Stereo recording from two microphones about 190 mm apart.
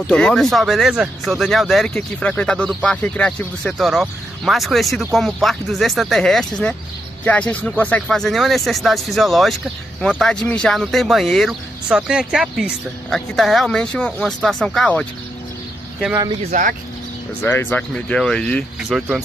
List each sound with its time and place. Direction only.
0.0 s speech: 5° left (ahead or behind)
16.4 s speech: 40° right (ahead or behind)
17.4 s speech: 10° left (ahead or behind)